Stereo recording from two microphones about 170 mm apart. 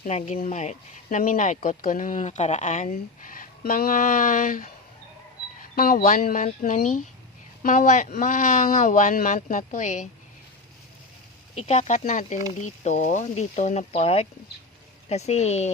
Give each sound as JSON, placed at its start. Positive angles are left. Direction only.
{"t": 0.0, "sound": "a woman's voice", "side_deg": 40}
{"t": 5.7, "sound": "speech", "side_deg": 55}
{"t": 11.5, "sound": "a woman's voice", "side_deg": 40}